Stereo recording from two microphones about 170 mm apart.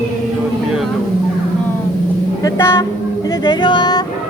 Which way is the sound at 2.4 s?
20° left (ahead or behind).